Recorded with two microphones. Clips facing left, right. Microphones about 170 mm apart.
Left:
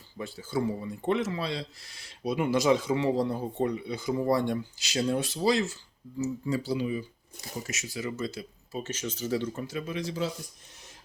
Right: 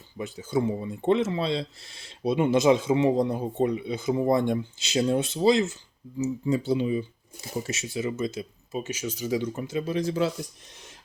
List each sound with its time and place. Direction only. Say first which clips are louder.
0.2 s speech: right 4 dB; 20° right (ahead or behind)
9.8 s speech: right 6 dB; 40° right (ahead or behind)